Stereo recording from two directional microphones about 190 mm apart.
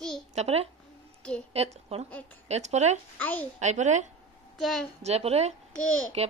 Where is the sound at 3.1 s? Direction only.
10° left (ahead or behind).